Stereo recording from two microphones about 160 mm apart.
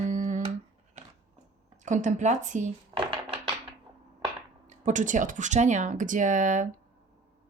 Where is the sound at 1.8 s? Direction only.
50° right (ahead or behind).